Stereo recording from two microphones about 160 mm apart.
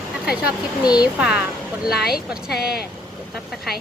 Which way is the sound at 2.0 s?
75° left (ahead or behind).